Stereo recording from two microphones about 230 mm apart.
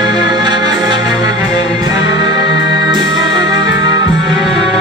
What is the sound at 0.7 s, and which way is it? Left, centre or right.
Music, centre.